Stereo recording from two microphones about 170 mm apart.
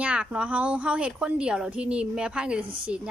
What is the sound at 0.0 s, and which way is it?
A woman's voice, 5° right (ahead or behind).